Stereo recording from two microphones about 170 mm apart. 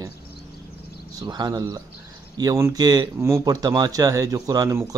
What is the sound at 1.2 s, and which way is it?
Speech, 25° right (ahead or behind).